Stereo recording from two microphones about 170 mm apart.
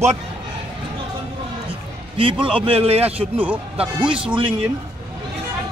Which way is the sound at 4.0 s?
30° right (ahead or behind).